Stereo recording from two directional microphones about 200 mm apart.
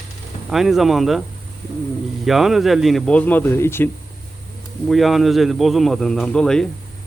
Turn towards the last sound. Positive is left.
turn(degrees=5)  # may be behind; listen again after turning